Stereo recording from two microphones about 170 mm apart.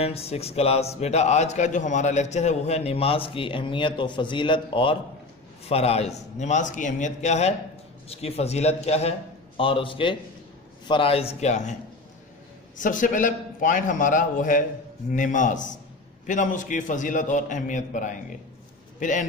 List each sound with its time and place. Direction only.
0.0 s a man's voice: 35° left (ahead or behind)
12.7 s a man's voice: 50° left (ahead or behind)